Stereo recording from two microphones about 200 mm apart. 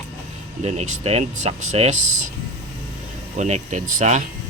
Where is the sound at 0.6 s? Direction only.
35° right (ahead or behind).